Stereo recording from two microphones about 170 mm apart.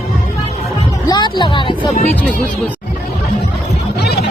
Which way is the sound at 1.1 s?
25° left (ahead or behind).